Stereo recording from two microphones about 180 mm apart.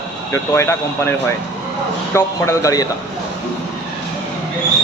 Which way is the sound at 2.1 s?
15° left (ahead or behind).